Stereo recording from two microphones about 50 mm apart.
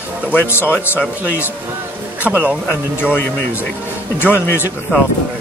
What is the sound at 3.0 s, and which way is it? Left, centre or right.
Speech, left.